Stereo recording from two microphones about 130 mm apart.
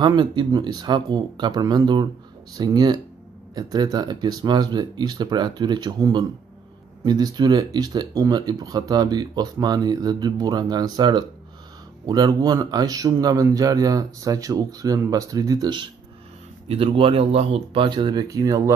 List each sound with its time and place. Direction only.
0.0 s speech: 35° right (ahead or behind)
16.6 s speech: 45° right (ahead or behind); by 18.8 s 25° right (ahead or behind)